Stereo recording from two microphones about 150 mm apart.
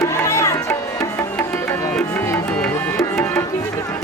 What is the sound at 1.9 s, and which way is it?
Music, 10° left (ahead or behind).